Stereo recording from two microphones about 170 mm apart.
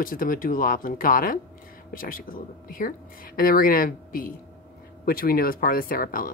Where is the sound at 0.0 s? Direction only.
55° left (ahead or behind).